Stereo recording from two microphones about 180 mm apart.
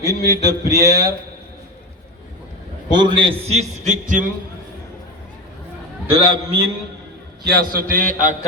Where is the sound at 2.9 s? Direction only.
25° right (ahead or behind); by 4.2 s 45° right (ahead or behind).